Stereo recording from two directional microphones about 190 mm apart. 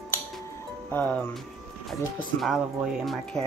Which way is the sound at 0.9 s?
10° left (ahead or behind).